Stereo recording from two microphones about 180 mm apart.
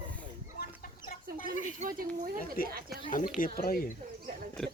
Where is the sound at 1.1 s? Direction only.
50° left (ahead or behind).